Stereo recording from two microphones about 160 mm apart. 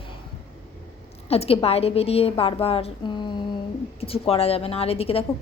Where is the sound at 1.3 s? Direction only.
40° left (ahead or behind).